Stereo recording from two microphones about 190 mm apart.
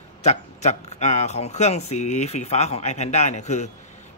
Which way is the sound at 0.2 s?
35° left (ahead or behind).